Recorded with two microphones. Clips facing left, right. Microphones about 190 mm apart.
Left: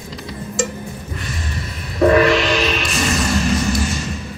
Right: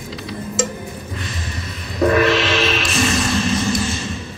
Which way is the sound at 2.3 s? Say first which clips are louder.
Left 1 dB; centre (ahead or behind).